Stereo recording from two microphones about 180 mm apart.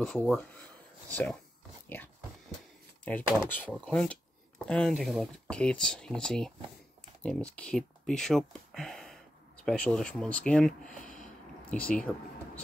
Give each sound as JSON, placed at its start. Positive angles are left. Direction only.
{"t": 0.0, "sound": "speech", "side_deg": 5}
{"t": 3.4, "sound": "speech", "side_deg": 10}
{"t": 11.0, "sound": "a sound", "side_deg": 45}
{"t": 11.7, "sound": "speech", "side_deg": 10}